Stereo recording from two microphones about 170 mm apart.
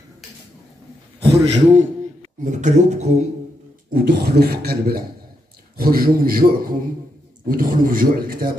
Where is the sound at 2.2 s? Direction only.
45° right (ahead or behind).